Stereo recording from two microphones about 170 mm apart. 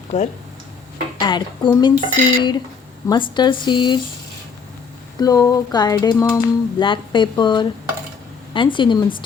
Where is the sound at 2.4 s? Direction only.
25° left (ahead or behind).